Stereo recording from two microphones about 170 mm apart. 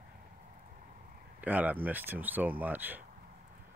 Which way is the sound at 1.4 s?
10° right (ahead or behind).